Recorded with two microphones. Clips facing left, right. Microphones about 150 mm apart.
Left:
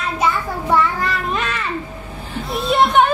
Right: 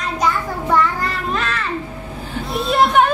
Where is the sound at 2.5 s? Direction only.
Centre (ahead or behind).